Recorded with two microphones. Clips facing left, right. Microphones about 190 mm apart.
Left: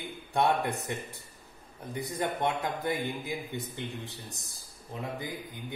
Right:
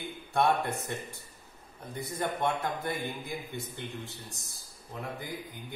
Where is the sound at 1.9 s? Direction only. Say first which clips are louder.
Left 1 dB; 15° left (ahead or behind).